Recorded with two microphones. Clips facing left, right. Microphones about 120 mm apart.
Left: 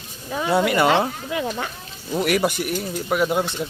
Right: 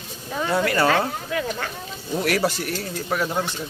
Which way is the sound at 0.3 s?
5° left (ahead or behind).